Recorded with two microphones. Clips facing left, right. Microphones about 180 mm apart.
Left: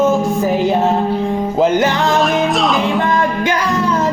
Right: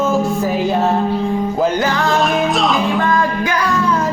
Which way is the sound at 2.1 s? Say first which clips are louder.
Left 1 dB; centre (ahead or behind).